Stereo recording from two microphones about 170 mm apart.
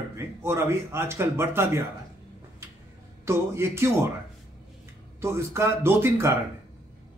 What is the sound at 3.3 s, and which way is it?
Speech, 15° right (ahead or behind).